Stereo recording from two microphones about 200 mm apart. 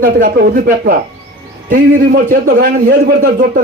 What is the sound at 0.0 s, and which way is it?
A man's voice, 50° right (ahead or behind).